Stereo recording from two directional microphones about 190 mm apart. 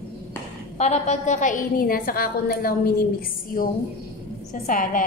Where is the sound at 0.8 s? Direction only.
35° left (ahead or behind).